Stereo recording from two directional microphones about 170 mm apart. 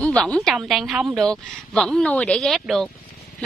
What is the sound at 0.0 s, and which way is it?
A woman's voice, 5° left (ahead or behind).